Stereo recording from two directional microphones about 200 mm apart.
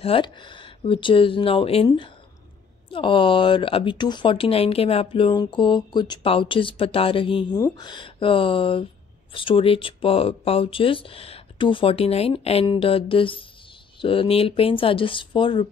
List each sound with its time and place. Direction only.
0.0 s speech: 25° left (ahead or behind)
2.9 s speech: 25° left (ahead or behind)